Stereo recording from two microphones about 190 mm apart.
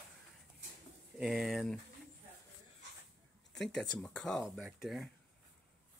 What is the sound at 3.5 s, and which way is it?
Speech, 5° left (ahead or behind).